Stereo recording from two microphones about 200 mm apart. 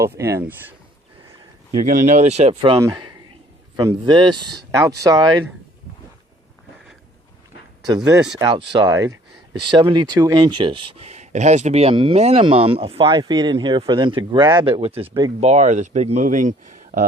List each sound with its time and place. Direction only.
0.0 s speech: 15° right (ahead or behind)
1.8 s speech: 40° right (ahead or behind)
2.6 s speech: 15° right (ahead or behind)
7.9 s speech: 20° right (ahead or behind)
15.4 s speech: 35° right (ahead or behind)